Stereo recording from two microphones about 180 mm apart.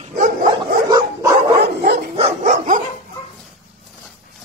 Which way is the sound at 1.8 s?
60° right (ahead or behind).